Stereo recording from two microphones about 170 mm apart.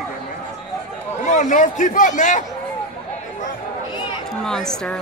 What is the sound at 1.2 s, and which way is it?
A man's voice, 45° left (ahead or behind).